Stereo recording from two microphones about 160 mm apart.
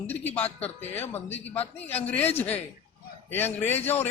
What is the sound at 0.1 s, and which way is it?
A man's voice, 10° left (ahead or behind).